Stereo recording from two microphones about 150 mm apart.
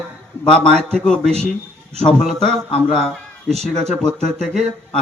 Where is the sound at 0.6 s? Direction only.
5° left (ahead or behind).